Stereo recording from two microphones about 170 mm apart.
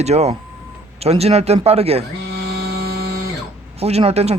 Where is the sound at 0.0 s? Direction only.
40° right (ahead or behind).